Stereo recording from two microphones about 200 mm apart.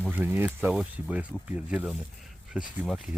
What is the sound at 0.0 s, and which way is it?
Speech, 10° right (ahead or behind).